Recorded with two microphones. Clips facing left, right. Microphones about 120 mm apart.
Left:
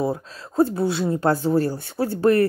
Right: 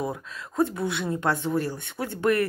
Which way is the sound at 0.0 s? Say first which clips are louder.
Left 6 dB; 30° left (ahead or behind).